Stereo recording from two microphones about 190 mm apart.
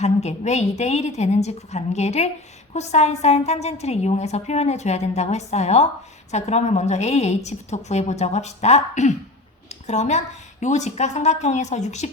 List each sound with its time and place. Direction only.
0.0 s a woman's voice: 35° left (ahead or behind)